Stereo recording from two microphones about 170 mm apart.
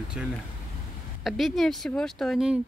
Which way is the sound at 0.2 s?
5° right (ahead or behind).